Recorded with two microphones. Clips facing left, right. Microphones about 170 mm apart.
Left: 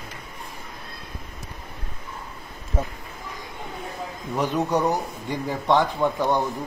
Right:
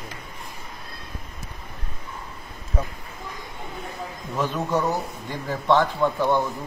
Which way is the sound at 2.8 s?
25° left (ahead or behind).